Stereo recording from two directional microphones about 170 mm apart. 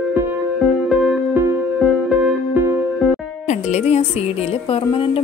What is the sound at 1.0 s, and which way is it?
Music, 10° right (ahead or behind).